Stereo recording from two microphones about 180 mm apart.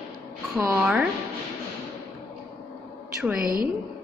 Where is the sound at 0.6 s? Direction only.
15° right (ahead or behind).